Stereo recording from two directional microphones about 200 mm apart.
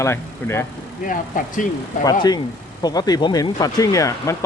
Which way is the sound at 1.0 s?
40° left (ahead or behind).